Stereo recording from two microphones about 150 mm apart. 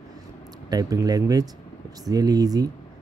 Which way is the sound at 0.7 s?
25° right (ahead or behind).